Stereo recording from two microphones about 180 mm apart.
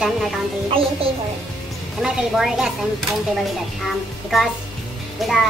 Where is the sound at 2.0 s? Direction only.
Centre (ahead or behind).